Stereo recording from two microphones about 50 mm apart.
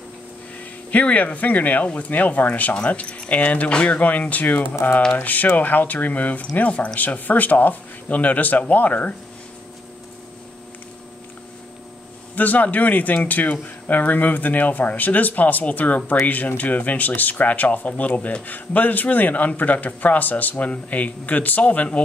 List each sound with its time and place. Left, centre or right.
0.9 s speech: left
12.4 s speech: left